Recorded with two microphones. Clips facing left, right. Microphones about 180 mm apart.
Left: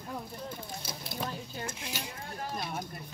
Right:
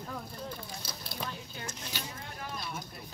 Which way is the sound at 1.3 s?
35° left (ahead or behind).